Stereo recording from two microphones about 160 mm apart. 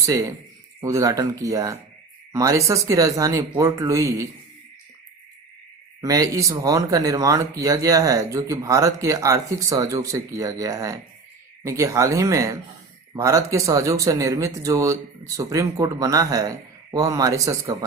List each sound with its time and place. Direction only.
0.0 s speech: 20° right (ahead or behind)
6.0 s speech: 20° right (ahead or behind)